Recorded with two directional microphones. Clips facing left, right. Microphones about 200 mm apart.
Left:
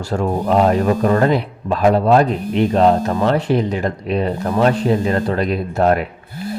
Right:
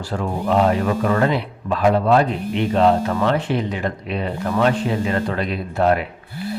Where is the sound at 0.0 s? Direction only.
45° left (ahead or behind).